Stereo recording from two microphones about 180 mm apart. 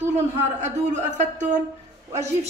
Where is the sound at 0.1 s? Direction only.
40° right (ahead or behind).